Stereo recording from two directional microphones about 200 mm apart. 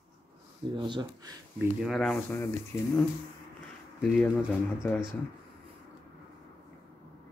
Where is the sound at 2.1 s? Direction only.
15° left (ahead or behind).